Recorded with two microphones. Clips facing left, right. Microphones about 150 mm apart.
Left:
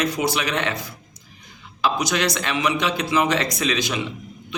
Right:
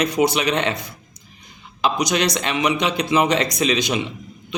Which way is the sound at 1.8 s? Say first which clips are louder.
Right 2 dB; 20° right (ahead or behind).